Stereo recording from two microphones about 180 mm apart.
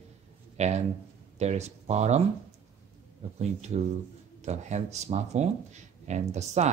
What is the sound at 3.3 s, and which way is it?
Speech, 40° right (ahead or behind).